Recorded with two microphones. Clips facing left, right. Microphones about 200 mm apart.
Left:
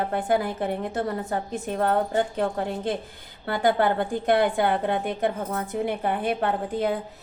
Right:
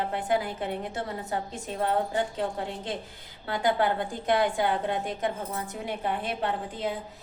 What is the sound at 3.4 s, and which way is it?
A woman's voice, 55° left (ahead or behind).